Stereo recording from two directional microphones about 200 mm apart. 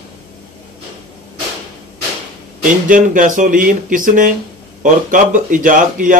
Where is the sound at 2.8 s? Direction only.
40° right (ahead or behind).